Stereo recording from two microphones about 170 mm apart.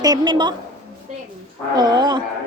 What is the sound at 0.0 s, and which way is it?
Speech, 25° right (ahead or behind).